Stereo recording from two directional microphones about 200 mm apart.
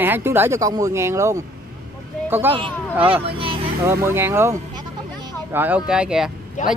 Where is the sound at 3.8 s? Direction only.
15° right (ahead or behind).